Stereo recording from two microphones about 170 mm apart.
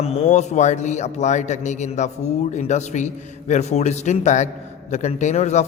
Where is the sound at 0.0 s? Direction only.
35° left (ahead or behind).